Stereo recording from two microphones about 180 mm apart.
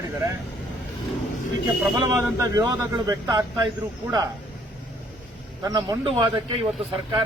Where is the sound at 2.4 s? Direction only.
20° right (ahead or behind).